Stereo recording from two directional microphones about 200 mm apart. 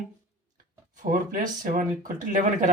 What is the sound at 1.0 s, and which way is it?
Speech, 40° right (ahead or behind).